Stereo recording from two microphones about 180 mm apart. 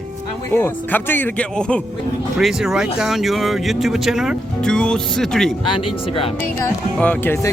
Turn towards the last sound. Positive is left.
turn(degrees=15)  # may be behind; listen again after turning